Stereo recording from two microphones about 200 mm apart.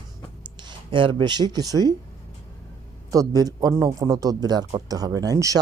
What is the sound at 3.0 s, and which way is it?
A man's voice, 15° right (ahead or behind).